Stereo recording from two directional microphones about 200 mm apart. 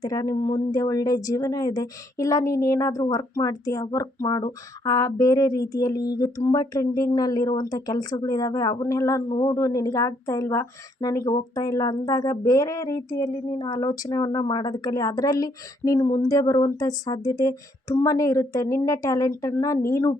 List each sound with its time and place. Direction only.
0.0 s a woman's voice: 20° left (ahead or behind)